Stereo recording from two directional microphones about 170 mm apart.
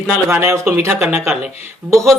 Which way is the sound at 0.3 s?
15° right (ahead or behind).